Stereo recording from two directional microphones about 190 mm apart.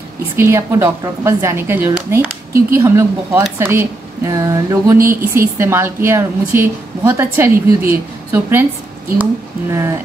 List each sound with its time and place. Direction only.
0.4 s speech: 15° right (ahead or behind)